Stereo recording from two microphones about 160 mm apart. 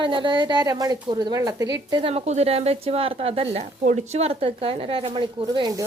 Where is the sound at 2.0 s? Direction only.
40° right (ahead or behind).